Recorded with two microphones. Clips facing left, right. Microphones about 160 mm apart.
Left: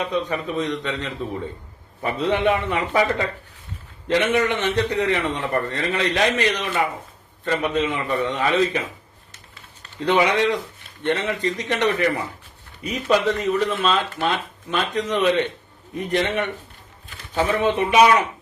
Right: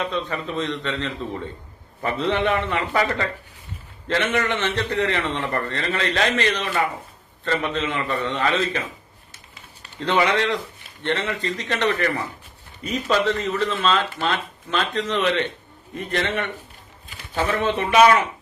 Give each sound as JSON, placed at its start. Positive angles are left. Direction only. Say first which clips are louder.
{"t": 0.0, "sound": "speech", "louder": "left 2 dB", "side_deg": 15}
{"t": 10.1, "sound": "speech", "louder": "left 2 dB", "side_deg": 15}